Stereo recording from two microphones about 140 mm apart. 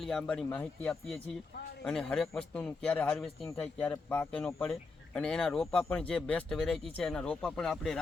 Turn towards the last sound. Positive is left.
turn(degrees=5)  # may be behind; listen again after turning